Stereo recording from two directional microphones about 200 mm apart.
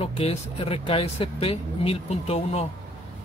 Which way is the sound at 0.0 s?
30° left (ahead or behind).